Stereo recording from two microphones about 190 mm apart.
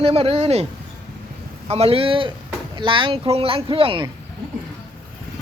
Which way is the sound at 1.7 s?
30° right (ahead or behind).